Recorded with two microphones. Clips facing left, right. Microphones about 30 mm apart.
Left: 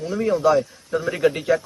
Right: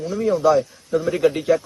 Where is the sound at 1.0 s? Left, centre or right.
Centre.